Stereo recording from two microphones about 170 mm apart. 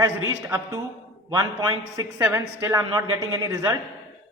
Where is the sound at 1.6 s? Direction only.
20° right (ahead or behind).